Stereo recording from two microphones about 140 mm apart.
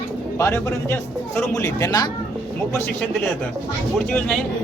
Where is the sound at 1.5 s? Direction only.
30° left (ahead or behind).